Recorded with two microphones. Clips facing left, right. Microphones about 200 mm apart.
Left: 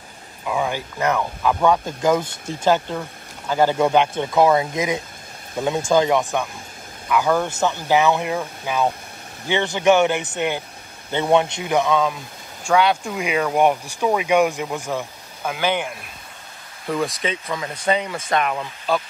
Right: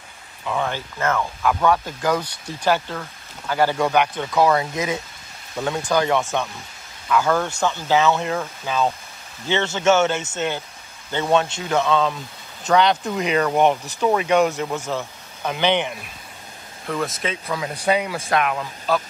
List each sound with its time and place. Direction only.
0.5 s speech: 10° left (ahead or behind)